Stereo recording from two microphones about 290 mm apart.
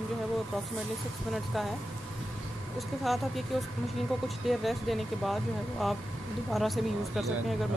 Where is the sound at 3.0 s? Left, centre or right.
Centre.